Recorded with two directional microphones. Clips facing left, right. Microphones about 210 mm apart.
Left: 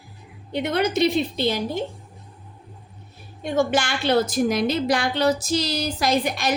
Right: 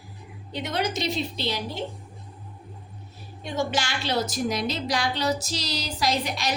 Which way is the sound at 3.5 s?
55° left (ahead or behind).